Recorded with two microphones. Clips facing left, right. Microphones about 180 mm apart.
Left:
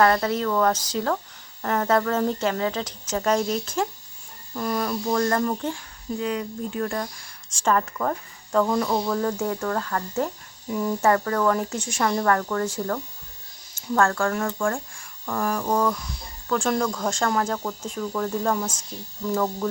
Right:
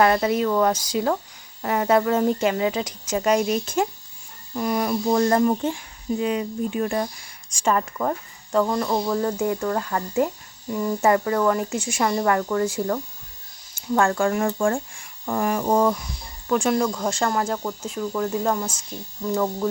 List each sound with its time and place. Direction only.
0.0 s speech: 15° right (ahead or behind)
7.6 s speech: 10° right (ahead or behind)
10.7 s speech: centre (ahead or behind)
11.0 s speech: 10° right (ahead or behind)
15.3 s a sound: 20° right (ahead or behind)
16.5 s speech: 15° right (ahead or behind)